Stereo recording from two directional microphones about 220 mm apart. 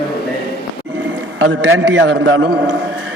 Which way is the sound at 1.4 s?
60° right (ahead or behind).